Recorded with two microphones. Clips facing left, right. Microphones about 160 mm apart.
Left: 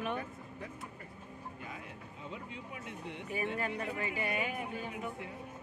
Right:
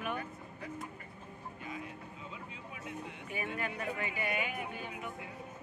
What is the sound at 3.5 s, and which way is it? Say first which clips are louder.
Speech: left 1 dB; 30° left (ahead or behind).